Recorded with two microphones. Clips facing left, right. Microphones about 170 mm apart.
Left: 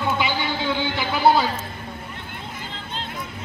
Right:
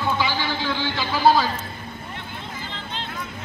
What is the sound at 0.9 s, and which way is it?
Speech, 20° left (ahead or behind).